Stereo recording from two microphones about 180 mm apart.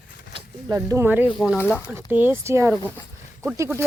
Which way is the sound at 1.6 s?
10° left (ahead or behind).